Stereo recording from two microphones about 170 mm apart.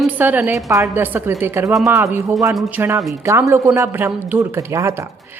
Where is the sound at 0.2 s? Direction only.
10° right (ahead or behind).